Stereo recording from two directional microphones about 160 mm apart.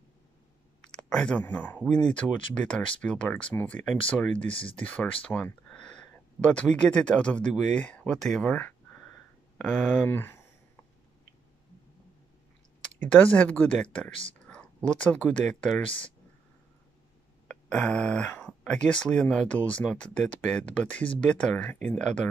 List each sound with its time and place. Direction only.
0.9 s speech: 5° left (ahead or behind)
4.5 s speech: 35° left (ahead or behind)
4.8 s speech: 10° left (ahead or behind)
13.0 s speech: 10° left (ahead or behind)
14.9 s speech: 5° left (ahead or behind)
17.6 s speech: 5° left (ahead or behind)